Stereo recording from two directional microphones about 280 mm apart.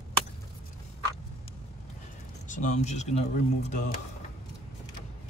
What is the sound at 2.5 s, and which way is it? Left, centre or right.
Speech, left.